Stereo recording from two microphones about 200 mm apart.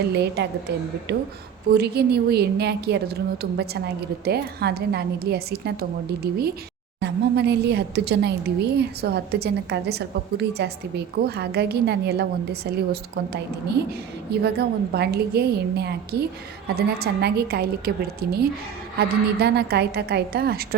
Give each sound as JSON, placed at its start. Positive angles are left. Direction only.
{"t": 0.1, "sound": "a woman's voice", "side_deg": -55}
{"t": 1.7, "sound": "a woman's voice", "side_deg": -55}